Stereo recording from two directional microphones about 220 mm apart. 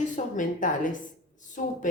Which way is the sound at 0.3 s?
35° left (ahead or behind).